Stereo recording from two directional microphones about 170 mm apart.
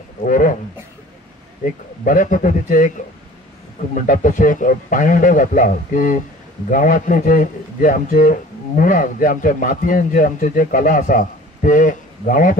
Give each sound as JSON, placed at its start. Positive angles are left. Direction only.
{"t": 0.2, "sound": "a man's voice", "side_deg": 50}
{"t": 1.6, "sound": "a man's voice", "side_deg": 50}
{"t": 3.9, "sound": "a man's voice", "side_deg": 50}